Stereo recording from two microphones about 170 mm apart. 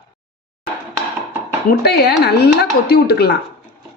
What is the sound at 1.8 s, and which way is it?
Speech, 70° left (ahead or behind).